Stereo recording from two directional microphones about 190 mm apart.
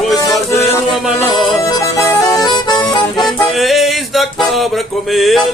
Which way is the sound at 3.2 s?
Centre (ahead or behind).